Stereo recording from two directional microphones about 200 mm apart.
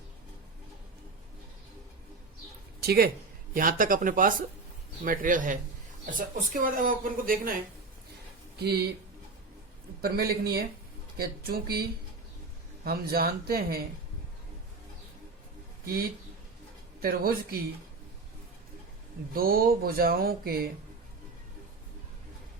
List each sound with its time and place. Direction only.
2.8 s a man's voice: 50° right (ahead or behind)
8.5 s speech: 55° right (ahead or behind)
10.0 s speech: 50° right (ahead or behind)
17.0 s speech: 50° right (ahead or behind)
19.3 s speech: 45° right (ahead or behind)